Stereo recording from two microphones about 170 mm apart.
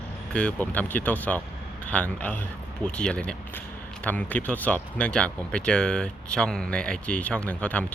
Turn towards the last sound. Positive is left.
turn(degrees=10)  # may be behind; listen again after turning